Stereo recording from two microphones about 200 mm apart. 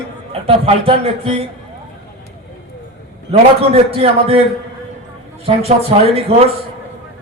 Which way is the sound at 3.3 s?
30° right (ahead or behind).